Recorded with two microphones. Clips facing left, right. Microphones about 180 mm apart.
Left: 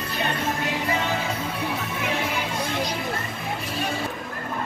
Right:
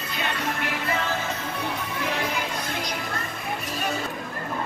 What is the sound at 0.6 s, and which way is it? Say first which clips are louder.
Music: left 2 dB; 15° left (ahead or behind).